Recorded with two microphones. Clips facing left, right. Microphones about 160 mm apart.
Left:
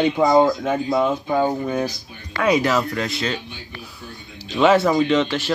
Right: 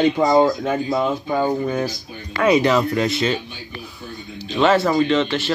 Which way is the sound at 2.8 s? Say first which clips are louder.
Right 5 dB; 20° right (ahead or behind).